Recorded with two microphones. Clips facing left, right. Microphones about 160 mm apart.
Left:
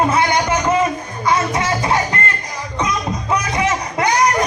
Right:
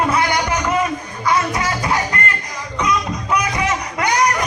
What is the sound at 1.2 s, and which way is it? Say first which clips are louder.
Music: left 1 dB; 25° left (ahead or behind).